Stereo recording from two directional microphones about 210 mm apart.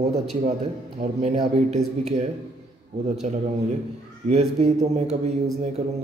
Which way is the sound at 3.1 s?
35° right (ahead or behind).